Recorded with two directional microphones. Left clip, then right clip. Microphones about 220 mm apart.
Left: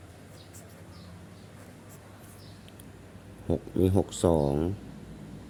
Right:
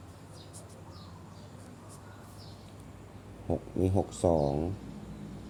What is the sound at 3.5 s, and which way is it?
Speech, 35° left (ahead or behind).